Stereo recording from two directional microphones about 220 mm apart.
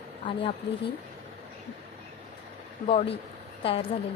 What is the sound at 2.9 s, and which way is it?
Speech, 25° left (ahead or behind).